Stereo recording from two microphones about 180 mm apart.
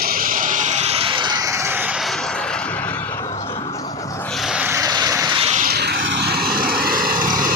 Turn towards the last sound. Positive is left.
turn(degrees=-50)  # may be behind; listen again after turning